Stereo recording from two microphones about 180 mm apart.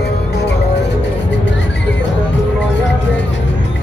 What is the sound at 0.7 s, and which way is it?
Music, 75° left (ahead or behind).